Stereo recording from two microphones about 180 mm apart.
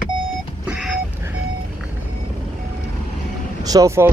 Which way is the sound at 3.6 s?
20° right (ahead or behind).